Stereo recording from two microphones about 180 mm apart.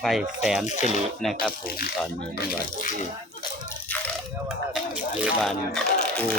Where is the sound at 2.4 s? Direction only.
50° left (ahead or behind).